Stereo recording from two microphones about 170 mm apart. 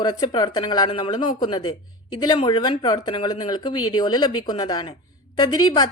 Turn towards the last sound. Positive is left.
turn(degrees=25)  # may be behind; listen again after turning